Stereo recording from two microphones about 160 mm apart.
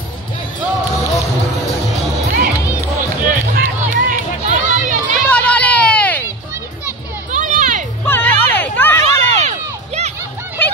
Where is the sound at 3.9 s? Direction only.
60° right (ahead or behind).